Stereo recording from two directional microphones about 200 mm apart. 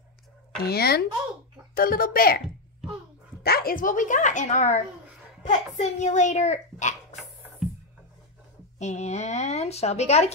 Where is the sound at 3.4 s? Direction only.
50° left (ahead or behind).